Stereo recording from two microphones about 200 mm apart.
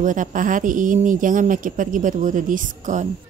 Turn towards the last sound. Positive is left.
turn(degrees=-40)  # may be behind; listen again after turning